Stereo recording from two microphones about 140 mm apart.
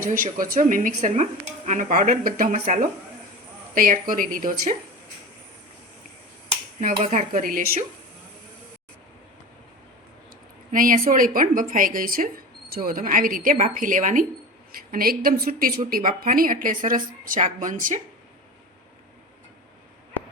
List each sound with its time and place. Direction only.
0.0 s speech: 75° right (ahead or behind)
3.8 s a woman's voice: 80° right
7.0 s speech: 60° right (ahead or behind); by 7.9 s 85° right
10.7 s a woman's voice: 80° right
14.7 s speech: 90° right; by 18.0 s 70° right (ahead or behind)